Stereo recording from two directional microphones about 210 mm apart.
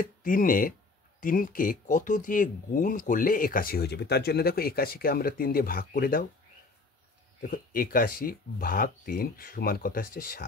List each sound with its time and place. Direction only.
0.0 s speech: 40° left (ahead or behind)
7.4 s speech: 45° left (ahead or behind)